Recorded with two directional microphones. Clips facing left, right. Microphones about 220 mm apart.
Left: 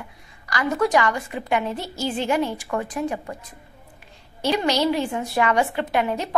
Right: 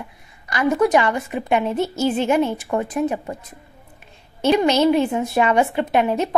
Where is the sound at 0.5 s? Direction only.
20° right (ahead or behind).